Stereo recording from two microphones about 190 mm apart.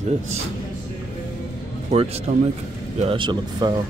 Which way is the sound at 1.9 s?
30° right (ahead or behind).